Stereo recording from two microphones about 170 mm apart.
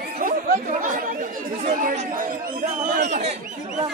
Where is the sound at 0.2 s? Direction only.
55° right (ahead or behind).